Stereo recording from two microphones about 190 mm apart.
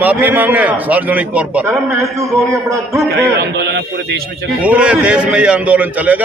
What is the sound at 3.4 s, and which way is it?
Speech, 60° right (ahead or behind).